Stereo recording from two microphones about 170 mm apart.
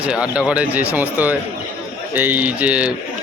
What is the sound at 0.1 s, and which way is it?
Speech, 5° right (ahead or behind).